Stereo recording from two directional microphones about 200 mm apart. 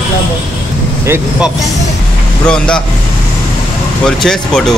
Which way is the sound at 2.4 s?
5° left (ahead or behind).